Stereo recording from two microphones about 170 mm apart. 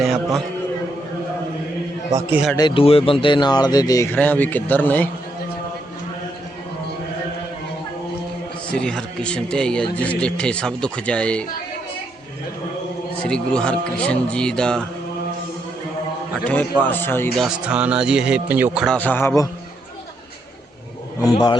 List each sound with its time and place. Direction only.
0.0 s speech: centre (ahead or behind)
2.6 s speech: 30° left (ahead or behind); by 5.0 s 10° left (ahead or behind)
8.7 s speech: 5° left (ahead or behind)
13.2 s speech: 5° left (ahead or behind)
16.4 s speech: 5° left (ahead or behind)
17.3 s speech: 5° right (ahead or behind)
18.9 s speech: 10° left (ahead or behind)
21.2 s speech: 25° left (ahead or behind)